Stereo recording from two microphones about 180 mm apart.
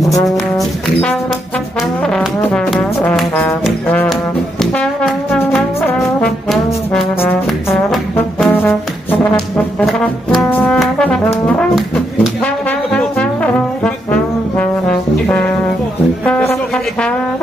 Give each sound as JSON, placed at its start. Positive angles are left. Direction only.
{"t": 2.0, "sound": "brass instrument", "side_deg": 5}
{"t": 5.9, "sound": "trombone", "side_deg": 0}
{"t": 7.9, "sound": "brass instrument", "side_deg": 5}
{"t": 16.3, "sound": "music", "side_deg": 5}